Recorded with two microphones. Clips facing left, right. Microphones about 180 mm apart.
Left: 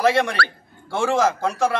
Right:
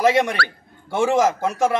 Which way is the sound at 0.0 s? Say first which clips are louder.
Right 1 dB; 20° right (ahead or behind).